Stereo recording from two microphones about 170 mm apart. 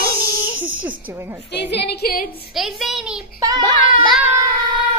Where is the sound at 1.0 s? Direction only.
15° right (ahead or behind).